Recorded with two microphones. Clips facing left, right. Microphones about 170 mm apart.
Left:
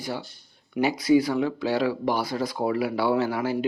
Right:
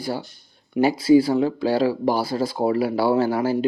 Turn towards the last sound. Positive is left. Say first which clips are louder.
# right 4 dB
turn(degrees=-40)  # may be behind; listen again after turning